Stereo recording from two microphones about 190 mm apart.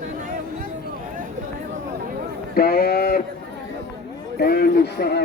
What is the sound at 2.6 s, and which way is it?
Speech, 55° left (ahead or behind).